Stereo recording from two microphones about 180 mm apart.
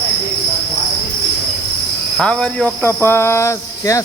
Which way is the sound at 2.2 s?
5° left (ahead or behind).